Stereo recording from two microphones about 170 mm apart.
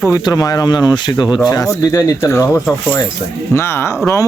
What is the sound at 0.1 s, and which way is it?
Speech, 20° left (ahead or behind).